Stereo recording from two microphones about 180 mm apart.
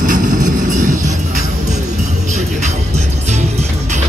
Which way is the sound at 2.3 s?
40° right (ahead or behind).